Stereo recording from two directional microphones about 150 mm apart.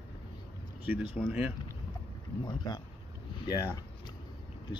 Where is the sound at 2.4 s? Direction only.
30° left (ahead or behind).